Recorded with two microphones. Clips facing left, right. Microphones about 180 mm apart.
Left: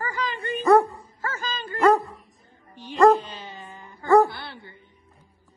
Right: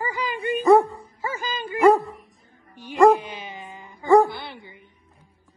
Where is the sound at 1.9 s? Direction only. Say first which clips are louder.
Right 2 dB; centre (ahead or behind).